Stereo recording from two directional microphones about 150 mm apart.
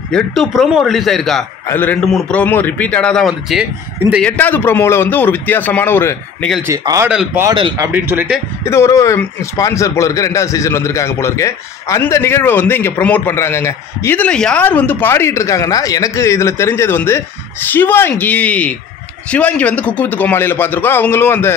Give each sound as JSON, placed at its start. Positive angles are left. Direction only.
{"t": 0.1, "sound": "a man's voice", "side_deg": 0}
{"t": 1.7, "sound": "a man's voice", "side_deg": 10}
{"t": 4.2, "sound": "a man's voice", "side_deg": 10}
{"t": 6.7, "sound": "speech", "side_deg": -20}
{"t": 7.1, "sound": "speech", "side_deg": -5}
{"t": 8.6, "sound": "a man's voice", "side_deg": 20}